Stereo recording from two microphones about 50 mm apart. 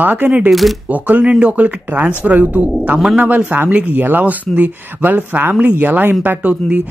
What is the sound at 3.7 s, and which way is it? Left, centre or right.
Speech, right.